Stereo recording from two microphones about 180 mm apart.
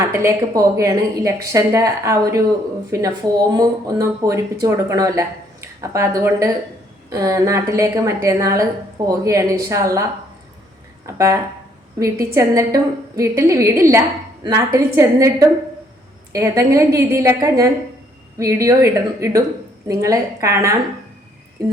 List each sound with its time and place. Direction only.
0.0 s a woman's voice: 15° right (ahead or behind)
11.0 s a sound: 15° right (ahead or behind)
11.9 s a woman's voice: 15° right (ahead or behind)